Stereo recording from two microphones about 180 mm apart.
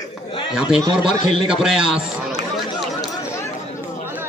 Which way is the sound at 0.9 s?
5° right (ahead or behind).